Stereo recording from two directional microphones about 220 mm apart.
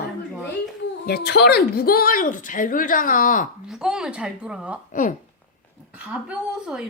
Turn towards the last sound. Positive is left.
turn(degrees=-5)  # may be behind; listen again after turning